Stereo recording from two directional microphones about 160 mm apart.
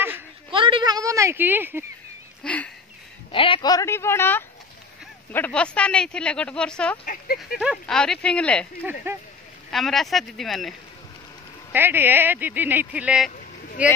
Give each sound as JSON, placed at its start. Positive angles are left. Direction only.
{"t": 0.5, "sound": "a sound", "side_deg": -30}
{"t": 2.4, "sound": "speech", "side_deg": 10}
{"t": 3.3, "sound": "speech", "side_deg": 35}
{"t": 7.3, "sound": "speech", "side_deg": -5}
{"t": 9.1, "sound": "speech", "side_deg": -15}
{"t": 9.7, "sound": "speech", "side_deg": 0}
{"t": 11.7, "sound": "speech", "side_deg": -10}